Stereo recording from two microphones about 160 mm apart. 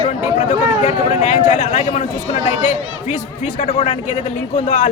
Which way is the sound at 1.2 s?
50° left (ahead or behind).